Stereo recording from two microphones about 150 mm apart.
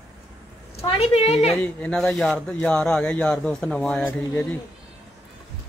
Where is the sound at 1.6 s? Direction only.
10° left (ahead or behind).